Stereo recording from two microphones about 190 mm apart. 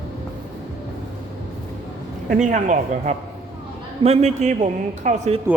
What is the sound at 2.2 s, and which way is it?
Speech, 40° right (ahead or behind).